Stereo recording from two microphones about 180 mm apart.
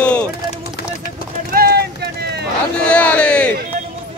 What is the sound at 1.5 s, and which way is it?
Run, 60° right (ahead or behind).